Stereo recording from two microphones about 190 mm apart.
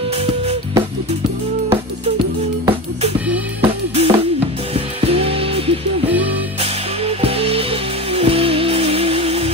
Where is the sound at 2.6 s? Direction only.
30° right (ahead or behind).